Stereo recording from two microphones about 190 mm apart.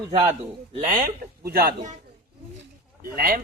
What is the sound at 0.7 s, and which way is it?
A man's voice, 40° right (ahead or behind).